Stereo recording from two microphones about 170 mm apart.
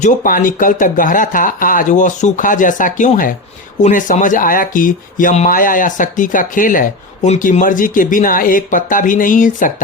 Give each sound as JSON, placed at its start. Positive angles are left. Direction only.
{"t": 0.0, "sound": "speech", "side_deg": 55}